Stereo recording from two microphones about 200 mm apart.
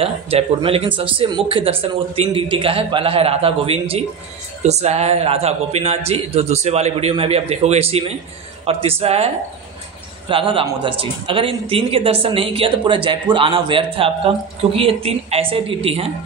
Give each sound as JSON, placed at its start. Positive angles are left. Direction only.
{"t": 0.0, "sound": "a man's voice", "side_deg": -30}